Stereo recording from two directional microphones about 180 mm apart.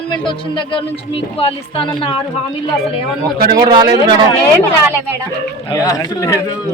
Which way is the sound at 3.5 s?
20° right (ahead or behind).